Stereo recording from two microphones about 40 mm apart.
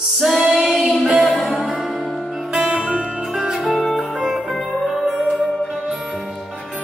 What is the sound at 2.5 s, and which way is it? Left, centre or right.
Music, right.